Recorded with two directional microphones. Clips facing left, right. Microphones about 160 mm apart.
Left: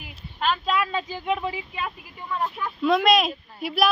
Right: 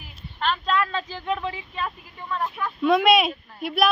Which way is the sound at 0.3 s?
5° left (ahead or behind).